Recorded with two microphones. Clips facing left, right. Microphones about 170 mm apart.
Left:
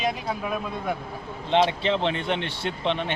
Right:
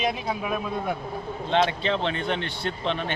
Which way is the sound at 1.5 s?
25° left (ahead or behind).